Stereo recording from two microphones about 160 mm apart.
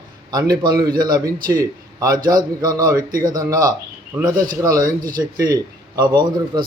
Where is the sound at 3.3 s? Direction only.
25° right (ahead or behind).